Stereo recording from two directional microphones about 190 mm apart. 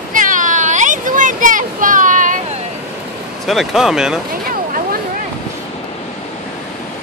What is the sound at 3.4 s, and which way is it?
Speech, centre (ahead or behind).